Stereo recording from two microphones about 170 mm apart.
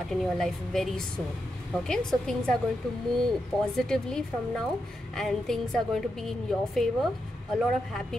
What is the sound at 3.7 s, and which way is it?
A woman's voice, 5° left (ahead or behind).